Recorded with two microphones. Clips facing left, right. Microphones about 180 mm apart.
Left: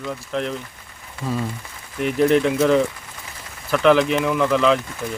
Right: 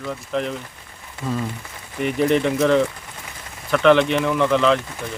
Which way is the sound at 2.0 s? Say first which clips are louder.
Left 2 dB; centre (ahead or behind).